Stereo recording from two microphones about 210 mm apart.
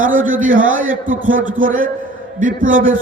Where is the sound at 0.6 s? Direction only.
70° right (ahead or behind).